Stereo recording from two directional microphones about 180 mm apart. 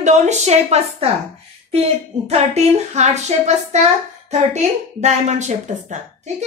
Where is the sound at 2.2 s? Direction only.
35° right (ahead or behind).